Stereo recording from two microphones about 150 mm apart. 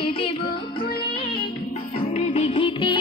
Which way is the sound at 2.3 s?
40° left (ahead or behind).